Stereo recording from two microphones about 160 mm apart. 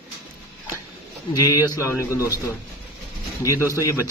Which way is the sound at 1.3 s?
20° left (ahead or behind).